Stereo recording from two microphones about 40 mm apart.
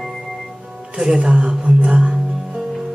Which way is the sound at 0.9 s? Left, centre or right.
Right.